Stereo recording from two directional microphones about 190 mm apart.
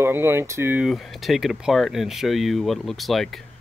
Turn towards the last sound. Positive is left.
turn(degrees=0)  # may be behind; listen again after turning